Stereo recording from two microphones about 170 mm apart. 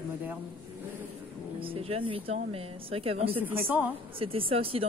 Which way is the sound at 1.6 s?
35° right (ahead or behind).